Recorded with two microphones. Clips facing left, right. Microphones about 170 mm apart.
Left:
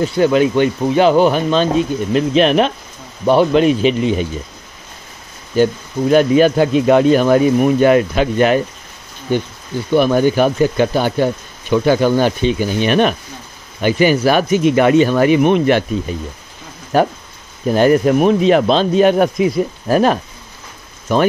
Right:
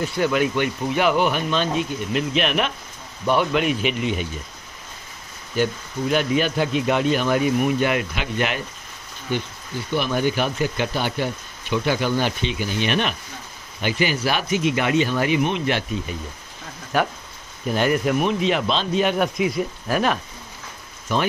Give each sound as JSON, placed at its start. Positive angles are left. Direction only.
{"t": 0.0, "sound": "speech", "side_deg": 30}
{"t": 5.6, "sound": "speech", "side_deg": 40}
{"t": 9.8, "sound": "speech", "side_deg": 45}
{"t": 16.9, "sound": "speech", "side_deg": 35}